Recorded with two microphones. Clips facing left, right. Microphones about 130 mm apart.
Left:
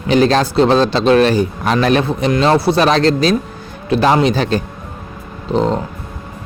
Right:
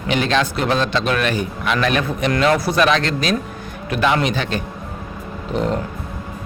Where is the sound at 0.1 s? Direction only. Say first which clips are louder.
Left 6 dB; 35° left (ahead or behind).